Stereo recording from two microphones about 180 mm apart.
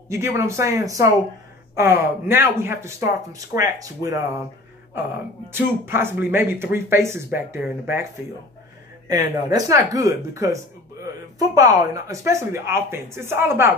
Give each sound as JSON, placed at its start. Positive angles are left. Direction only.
{"t": 0.1, "sound": "speech", "side_deg": -15}
{"t": 5.5, "sound": "speech", "side_deg": -15}